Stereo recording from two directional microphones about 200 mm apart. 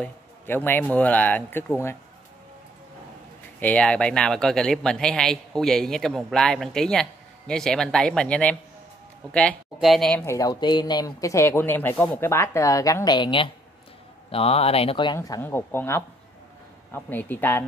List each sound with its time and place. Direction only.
0.0 s speech: 10° left (ahead or behind)
3.5 s speech: 5° left (ahead or behind); by 15.1 s 25° left (ahead or behind)
15.1 s speech: 15° left (ahead or behind)